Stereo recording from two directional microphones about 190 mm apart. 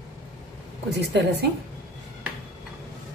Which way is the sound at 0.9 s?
60° right (ahead or behind).